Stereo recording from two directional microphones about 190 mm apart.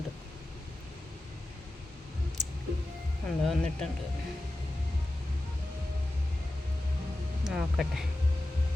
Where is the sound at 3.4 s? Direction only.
5° left (ahead or behind).